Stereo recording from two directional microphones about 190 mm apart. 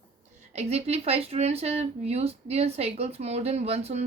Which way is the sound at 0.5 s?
35° right (ahead or behind).